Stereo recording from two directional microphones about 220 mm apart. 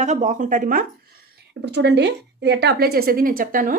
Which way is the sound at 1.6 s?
50° right (ahead or behind).